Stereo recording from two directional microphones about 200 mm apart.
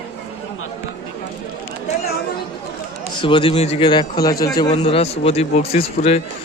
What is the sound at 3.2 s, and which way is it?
A man's voice, 25° left (ahead or behind).